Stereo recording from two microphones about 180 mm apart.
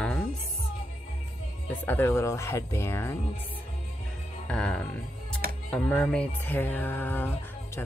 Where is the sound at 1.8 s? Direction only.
10° left (ahead or behind).